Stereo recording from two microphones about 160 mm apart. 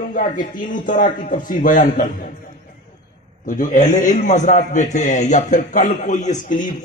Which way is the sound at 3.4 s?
55° left (ahead or behind).